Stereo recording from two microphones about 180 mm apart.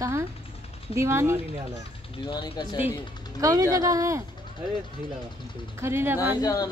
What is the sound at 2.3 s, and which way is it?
Speech, 25° left (ahead or behind).